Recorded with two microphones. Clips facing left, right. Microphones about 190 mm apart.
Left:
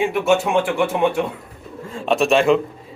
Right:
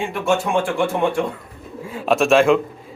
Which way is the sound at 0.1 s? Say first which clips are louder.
Left 2 dB; 5° left (ahead or behind).